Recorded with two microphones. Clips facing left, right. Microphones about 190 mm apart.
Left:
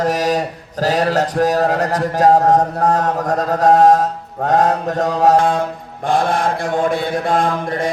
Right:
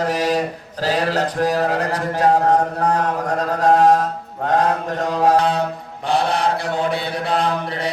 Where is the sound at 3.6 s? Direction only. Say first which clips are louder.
Left 3 dB; 45° left (ahead or behind).